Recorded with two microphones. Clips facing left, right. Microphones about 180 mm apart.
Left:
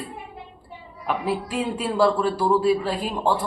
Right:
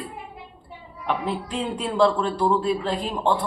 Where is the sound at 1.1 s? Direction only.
5° left (ahead or behind).